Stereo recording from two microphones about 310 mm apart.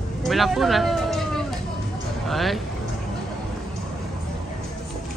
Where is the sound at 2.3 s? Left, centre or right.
Centre.